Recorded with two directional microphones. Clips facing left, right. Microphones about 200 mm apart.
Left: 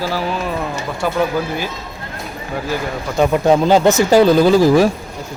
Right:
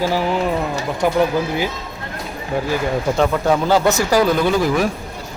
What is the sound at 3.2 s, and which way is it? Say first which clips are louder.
Speech: left 6 dB; 20° left (ahead or behind).